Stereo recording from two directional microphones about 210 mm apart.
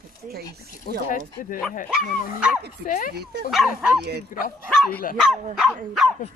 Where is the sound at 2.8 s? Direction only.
40° left (ahead or behind).